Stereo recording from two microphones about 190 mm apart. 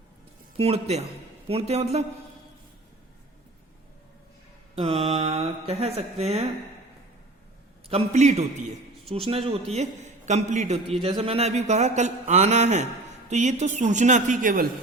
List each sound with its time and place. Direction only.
0.5 s a man's voice: 30° right (ahead or behind)
4.7 s a man's voice: 30° right (ahead or behind)
7.9 s a man's voice: 35° right (ahead or behind)